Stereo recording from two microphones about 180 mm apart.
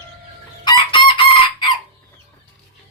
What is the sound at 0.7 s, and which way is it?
Chicken, 25° left (ahead or behind).